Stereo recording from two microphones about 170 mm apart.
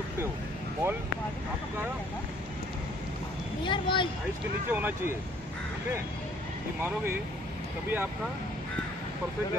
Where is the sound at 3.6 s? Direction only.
30° left (ahead or behind).